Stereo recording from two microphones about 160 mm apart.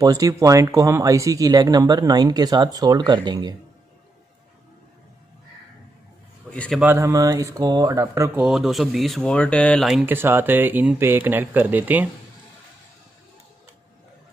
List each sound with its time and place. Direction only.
0.0 s speech: 20° right (ahead or behind)
6.5 s a man's voice: 10° left (ahead or behind)
6.8 s speech: 15° right (ahead or behind)
8.4 s speech: centre (ahead or behind)
10.1 s speech: 15° right (ahead or behind)